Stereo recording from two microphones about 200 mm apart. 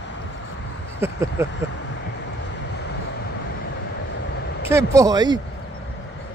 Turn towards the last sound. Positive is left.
turn(degrees=-20)  # may be behind; listen again after turning